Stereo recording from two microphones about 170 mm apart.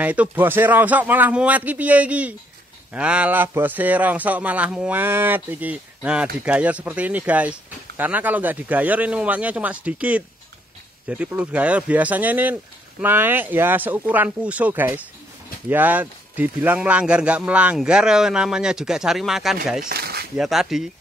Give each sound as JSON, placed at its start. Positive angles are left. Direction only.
{"t": 0.0, "sound": "a man's voice", "side_deg": -10}
{"t": 19.8, "sound": "speech", "side_deg": -65}
{"t": 20.3, "sound": "a man's voice", "side_deg": 0}